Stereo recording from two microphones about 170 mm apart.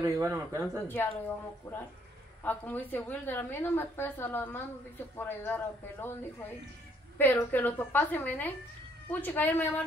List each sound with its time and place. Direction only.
0.0 s speech: 20° right (ahead or behind)
0.8 s a woman's voice: 10° left (ahead or behind)
7.2 s a woman's voice: 10° left (ahead or behind)